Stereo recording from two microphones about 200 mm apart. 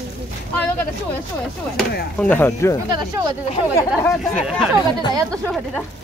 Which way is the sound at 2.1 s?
10° left (ahead or behind).